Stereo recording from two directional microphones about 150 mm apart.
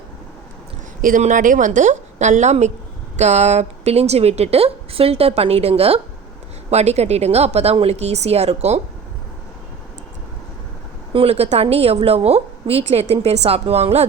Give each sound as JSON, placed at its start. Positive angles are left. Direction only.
{"t": 1.0, "sound": "a woman's voice", "side_deg": -60}
{"t": 11.1, "sound": "a woman's voice", "side_deg": -40}